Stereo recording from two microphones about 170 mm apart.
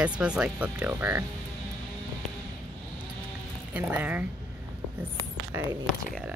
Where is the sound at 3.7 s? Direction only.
10° right (ahead or behind).